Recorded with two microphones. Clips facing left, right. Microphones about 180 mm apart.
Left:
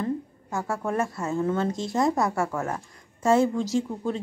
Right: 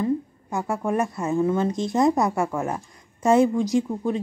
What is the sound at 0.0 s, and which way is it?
A woman's voice, 15° right (ahead or behind).